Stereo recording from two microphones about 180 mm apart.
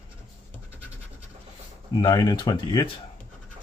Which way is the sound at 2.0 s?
20° left (ahead or behind).